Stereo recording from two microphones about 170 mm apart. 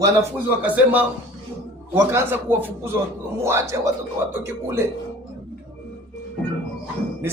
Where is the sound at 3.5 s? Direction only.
15° right (ahead or behind).